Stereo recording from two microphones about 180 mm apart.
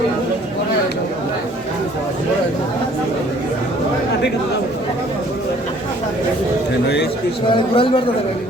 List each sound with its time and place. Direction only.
7.4 s speech: 30° left (ahead or behind)